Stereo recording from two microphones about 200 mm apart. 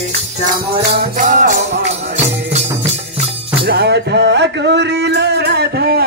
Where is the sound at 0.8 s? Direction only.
40° right (ahead or behind).